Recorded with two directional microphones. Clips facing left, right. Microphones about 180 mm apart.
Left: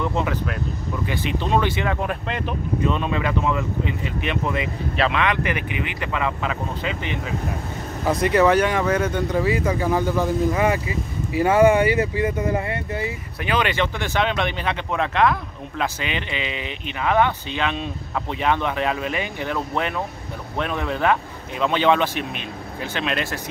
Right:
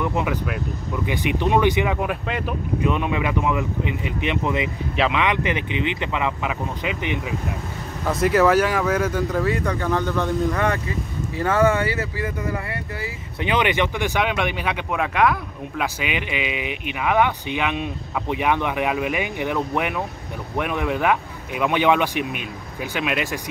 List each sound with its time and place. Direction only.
0.0 s speech: 15° right (ahead or behind)
8.0 s speech: centre (ahead or behind)
9.8 s speech: 10° left (ahead or behind)
13.4 s speech: 20° right (ahead or behind)